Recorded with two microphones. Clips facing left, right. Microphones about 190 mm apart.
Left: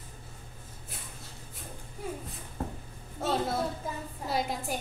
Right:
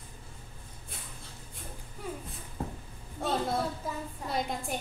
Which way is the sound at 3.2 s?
Centre (ahead or behind).